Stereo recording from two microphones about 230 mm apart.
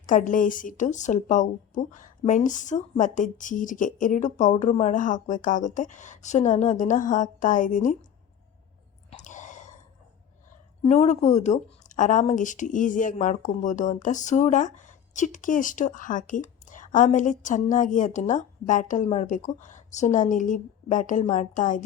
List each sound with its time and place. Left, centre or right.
0.0 s speech: left
9.0 s whispering: left
10.8 s speech: left